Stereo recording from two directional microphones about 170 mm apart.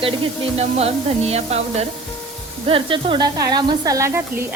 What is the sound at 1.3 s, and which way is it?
Speech, 40° right (ahead or behind).